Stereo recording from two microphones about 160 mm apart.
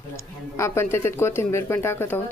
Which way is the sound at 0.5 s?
15° left (ahead or behind).